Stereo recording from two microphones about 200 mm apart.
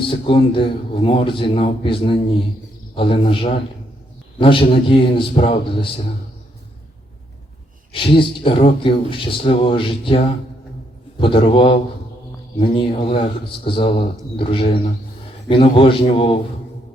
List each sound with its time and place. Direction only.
0.0 s a man's voice: 25° left (ahead or behind)
7.9 s a man's voice: 25° left (ahead or behind)
11.2 s a man's voice: 25° left (ahead or behind)